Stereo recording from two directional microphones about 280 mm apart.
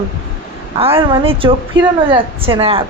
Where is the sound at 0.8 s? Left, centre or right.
Centre.